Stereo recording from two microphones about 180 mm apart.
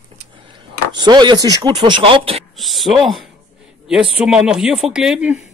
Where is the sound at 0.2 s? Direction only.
25° right (ahead or behind).